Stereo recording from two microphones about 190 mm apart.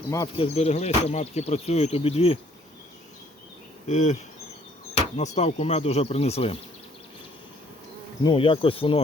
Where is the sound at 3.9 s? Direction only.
40° left (ahead or behind).